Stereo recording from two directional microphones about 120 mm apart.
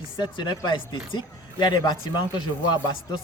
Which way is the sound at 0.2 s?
40° left (ahead or behind).